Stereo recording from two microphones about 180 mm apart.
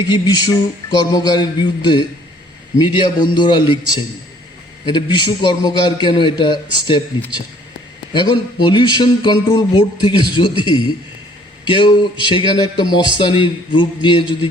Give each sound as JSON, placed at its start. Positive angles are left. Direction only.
{"t": 0.0, "sound": "a man's voice", "side_deg": 25}
{"t": 8.1, "sound": "a man's voice", "side_deg": 25}